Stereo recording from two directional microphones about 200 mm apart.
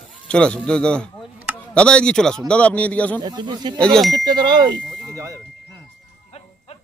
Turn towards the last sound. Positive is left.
turn(degrees=30)  # may be behind; listen again after turning